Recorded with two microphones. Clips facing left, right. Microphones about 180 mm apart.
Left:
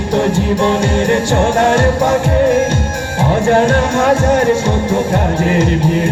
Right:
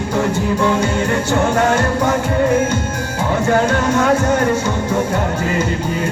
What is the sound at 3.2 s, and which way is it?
Music, 30° left (ahead or behind).